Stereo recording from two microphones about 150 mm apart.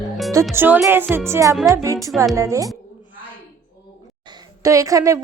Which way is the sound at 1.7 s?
20° right (ahead or behind).